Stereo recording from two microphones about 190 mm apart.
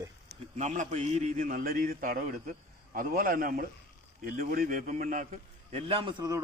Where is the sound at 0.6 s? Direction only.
40° right (ahead or behind).